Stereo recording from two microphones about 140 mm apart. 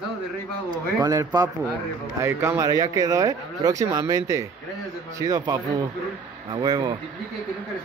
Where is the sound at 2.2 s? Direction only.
20° right (ahead or behind).